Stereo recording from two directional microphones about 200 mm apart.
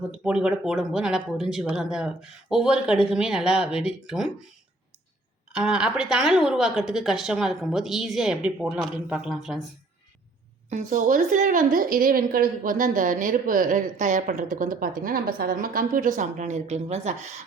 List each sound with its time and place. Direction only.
0.3 s speech: 5° right (ahead or behind)
5.5 s speech: 5° right (ahead or behind)
10.7 s a woman's voice: 40° right (ahead or behind)